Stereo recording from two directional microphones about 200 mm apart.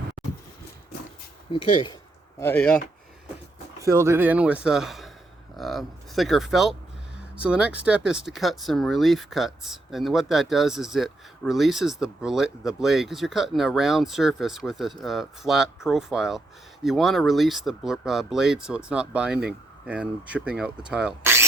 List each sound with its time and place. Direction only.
0.2 s a sound: centre (ahead or behind)
1.7 s speech: 25° left (ahead or behind)
2.4 s speech: 10° left (ahead or behind)
3.8 s speech: 15° right (ahead or behind)